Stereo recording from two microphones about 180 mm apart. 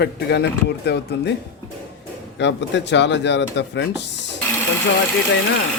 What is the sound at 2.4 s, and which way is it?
Speech, 75° left (ahead or behind).